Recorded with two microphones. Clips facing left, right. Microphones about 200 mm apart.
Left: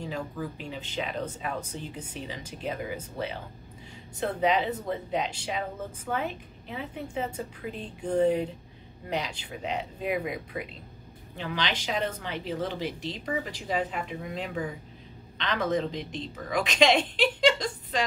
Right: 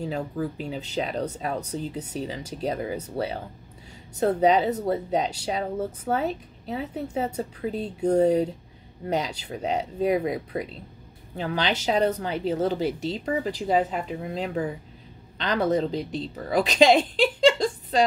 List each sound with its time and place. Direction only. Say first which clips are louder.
0.0 s speech: right 5 dB; 35° right (ahead or behind)